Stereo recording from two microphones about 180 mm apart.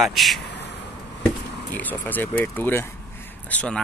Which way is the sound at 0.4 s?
70° left (ahead or behind).